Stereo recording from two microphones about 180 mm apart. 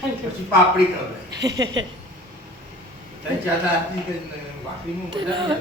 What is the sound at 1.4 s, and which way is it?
Speech, 20° right (ahead or behind).